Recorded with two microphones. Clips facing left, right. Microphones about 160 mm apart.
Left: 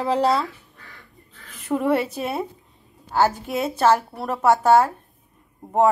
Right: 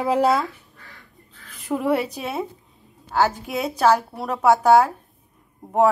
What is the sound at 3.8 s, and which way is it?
Speech, 15° right (ahead or behind).